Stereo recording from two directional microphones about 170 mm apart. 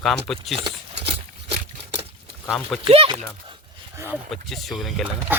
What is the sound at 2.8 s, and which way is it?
Speech, 35° right (ahead or behind).